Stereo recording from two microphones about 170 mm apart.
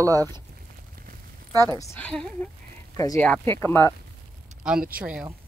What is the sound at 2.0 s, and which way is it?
Speech, 5° left (ahead or behind).